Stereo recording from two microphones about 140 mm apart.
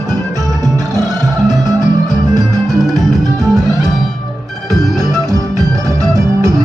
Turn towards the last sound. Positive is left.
turn(degrees=-25)  # may be behind; listen again after turning